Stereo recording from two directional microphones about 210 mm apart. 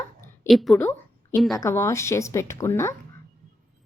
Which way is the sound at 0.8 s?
10° left (ahead or behind).